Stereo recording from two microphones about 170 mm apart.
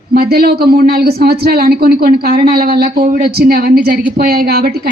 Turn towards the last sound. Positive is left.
turn(degrees=-65)  # may be behind; listen again after turning